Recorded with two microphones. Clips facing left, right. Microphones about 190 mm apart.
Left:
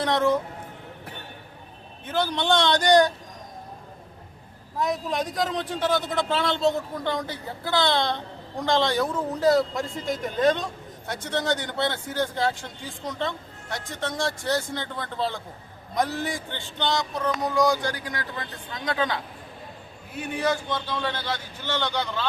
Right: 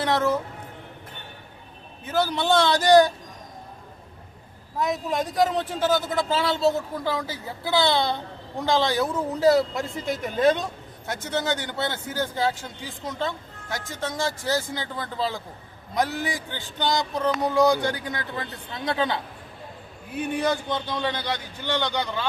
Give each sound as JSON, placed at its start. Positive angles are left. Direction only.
{"t": 0.0, "sound": "a woman's voice", "side_deg": -5}
{"t": 2.0, "sound": "a man's voice", "side_deg": -5}
{"t": 4.8, "sound": "a man's voice", "side_deg": -5}
{"t": 17.0, "sound": "music", "side_deg": -30}
{"t": 17.7, "sound": "a man's voice", "side_deg": -25}
{"t": 20.4, "sound": "a man's voice", "side_deg": -15}